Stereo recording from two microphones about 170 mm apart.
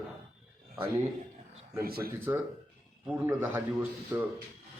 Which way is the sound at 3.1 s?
15° right (ahead or behind).